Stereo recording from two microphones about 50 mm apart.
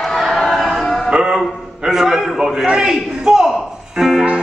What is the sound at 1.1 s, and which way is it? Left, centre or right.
Music, centre.